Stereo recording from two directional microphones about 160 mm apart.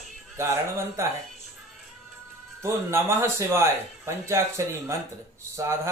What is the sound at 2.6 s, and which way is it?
Speech, 15° right (ahead or behind).